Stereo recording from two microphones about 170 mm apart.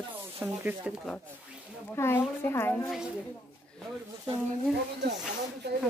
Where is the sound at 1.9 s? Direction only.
15° left (ahead or behind).